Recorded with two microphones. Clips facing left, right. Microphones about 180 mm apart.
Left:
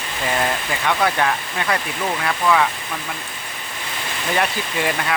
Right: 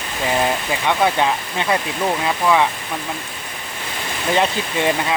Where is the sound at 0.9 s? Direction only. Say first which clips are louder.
Right 2 dB; 20° right (ahead or behind).